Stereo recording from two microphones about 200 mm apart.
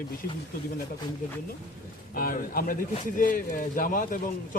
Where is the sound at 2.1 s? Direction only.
45° left (ahead or behind).